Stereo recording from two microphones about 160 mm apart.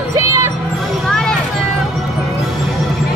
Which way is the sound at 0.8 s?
Centre (ahead or behind).